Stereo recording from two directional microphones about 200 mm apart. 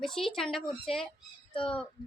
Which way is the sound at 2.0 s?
20° left (ahead or behind).